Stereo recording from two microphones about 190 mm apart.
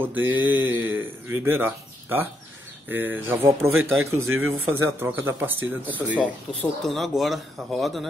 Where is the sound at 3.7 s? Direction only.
90° right.